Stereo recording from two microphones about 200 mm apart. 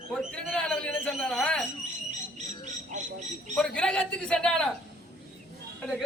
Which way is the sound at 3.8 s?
5° left (ahead or behind).